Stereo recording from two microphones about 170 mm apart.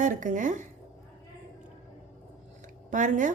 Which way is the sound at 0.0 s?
50° right (ahead or behind).